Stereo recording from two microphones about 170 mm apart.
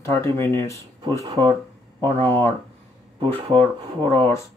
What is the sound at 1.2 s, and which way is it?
Speech, 30° right (ahead or behind).